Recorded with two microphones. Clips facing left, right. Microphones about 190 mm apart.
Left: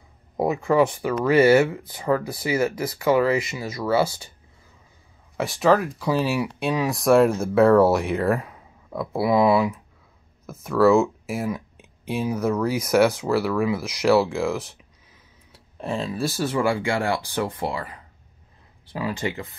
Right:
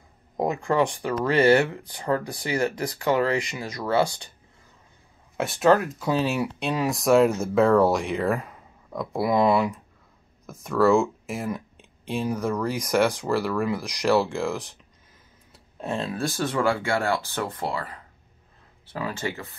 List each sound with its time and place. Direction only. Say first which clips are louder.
0.4 s speech: left 3 dB; 5° left (ahead or behind)
5.4 s speech: even; centre (ahead or behind); by 19.5 s 15° left (ahead or behind)